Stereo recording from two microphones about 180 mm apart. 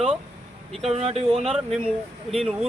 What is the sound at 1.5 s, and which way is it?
Speech, centre (ahead or behind).